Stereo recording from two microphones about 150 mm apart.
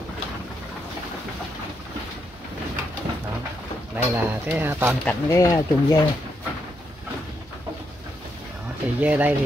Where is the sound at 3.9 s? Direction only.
10° right (ahead or behind).